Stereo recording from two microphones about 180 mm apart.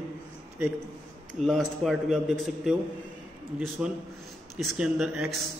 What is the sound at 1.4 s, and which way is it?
A man's voice, centre (ahead or behind).